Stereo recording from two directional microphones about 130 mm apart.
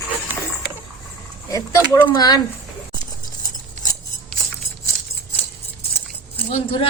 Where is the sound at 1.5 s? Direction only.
30° left (ahead or behind).